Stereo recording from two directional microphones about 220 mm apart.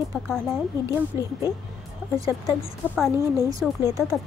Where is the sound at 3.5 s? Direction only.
15° right (ahead or behind).